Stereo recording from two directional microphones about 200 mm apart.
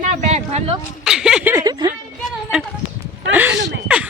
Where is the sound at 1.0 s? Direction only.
5° right (ahead or behind).